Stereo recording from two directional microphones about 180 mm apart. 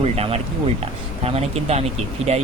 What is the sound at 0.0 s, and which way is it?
Speech, 35° right (ahead or behind).